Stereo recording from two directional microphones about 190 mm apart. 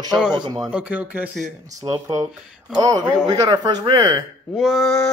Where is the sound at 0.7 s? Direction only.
5° right (ahead or behind).